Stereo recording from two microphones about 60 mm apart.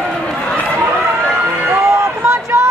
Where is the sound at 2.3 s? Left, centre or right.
Right.